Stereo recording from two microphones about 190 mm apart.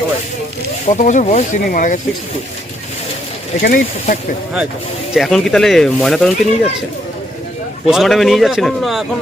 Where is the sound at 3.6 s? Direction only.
45° left (ahead or behind).